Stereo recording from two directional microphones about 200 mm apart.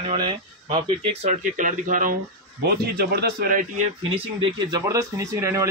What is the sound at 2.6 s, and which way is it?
Speech, 55° right (ahead or behind).